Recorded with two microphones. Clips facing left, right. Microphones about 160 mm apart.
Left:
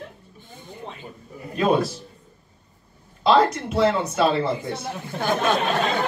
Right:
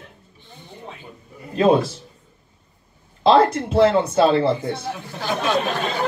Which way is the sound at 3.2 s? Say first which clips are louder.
Right 3 dB; 25° right (ahead or behind).